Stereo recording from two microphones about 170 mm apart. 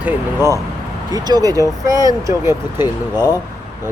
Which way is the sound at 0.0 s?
15° right (ahead or behind).